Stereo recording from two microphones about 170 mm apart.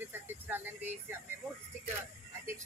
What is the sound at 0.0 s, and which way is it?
Music, 10° right (ahead or behind).